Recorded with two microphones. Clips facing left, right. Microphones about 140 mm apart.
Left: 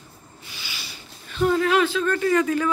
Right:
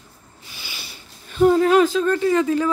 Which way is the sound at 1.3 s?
40° right (ahead or behind).